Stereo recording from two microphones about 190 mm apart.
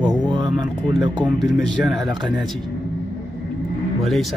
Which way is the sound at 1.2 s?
Centre (ahead or behind).